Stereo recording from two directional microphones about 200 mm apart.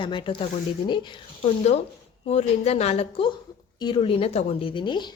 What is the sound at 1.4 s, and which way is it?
A woman's voice, 35° left (ahead or behind).